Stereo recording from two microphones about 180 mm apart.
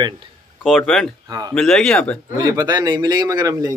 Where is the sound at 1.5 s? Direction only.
5° left (ahead or behind).